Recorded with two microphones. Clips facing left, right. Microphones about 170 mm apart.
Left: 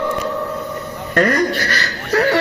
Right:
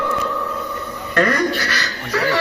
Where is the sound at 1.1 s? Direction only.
40° left (ahead or behind).